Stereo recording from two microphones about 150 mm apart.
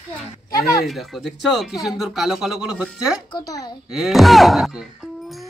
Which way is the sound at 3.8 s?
5° right (ahead or behind).